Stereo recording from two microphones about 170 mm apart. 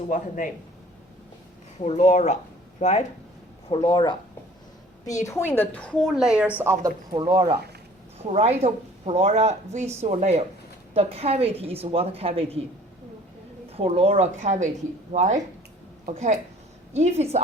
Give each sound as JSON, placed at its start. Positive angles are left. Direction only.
{"t": 0.1, "sound": "speech", "side_deg": 50}
{"t": 1.8, "sound": "speech", "side_deg": 40}
{"t": 3.7, "sound": "speech", "side_deg": 30}
{"t": 5.4, "sound": "a woman's voice", "side_deg": 10}
{"t": 6.6, "sound": "a woman's voice", "side_deg": -20}
{"t": 13.7, "sound": "a woman's voice", "side_deg": -35}